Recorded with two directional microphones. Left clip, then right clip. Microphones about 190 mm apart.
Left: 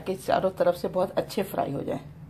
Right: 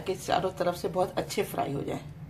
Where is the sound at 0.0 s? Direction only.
45° left (ahead or behind).